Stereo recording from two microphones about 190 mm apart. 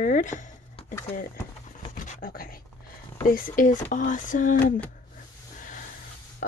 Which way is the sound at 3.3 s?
45° left (ahead or behind).